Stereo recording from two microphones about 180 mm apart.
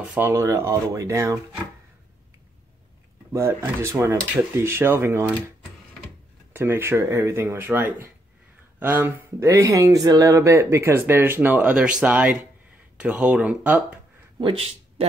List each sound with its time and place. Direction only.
0.1 s speech: 15° right (ahead or behind)
3.3 s speech: 15° right (ahead or behind)
6.5 s speech: 15° right (ahead or behind)
14.4 s speech: 30° right (ahead or behind)